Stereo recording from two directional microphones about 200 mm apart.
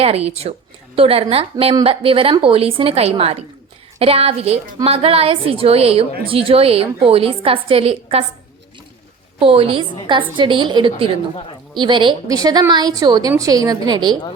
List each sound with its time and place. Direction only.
0.0 s a woman's voice: 30° right (ahead or behind)
9.4 s a woman's voice: 30° right (ahead or behind)